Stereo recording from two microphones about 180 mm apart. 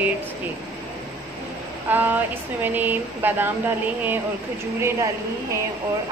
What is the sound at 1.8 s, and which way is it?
A woman's voice, 10° right (ahead or behind).